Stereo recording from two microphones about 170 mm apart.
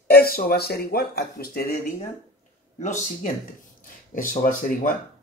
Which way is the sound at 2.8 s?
45° left (ahead or behind).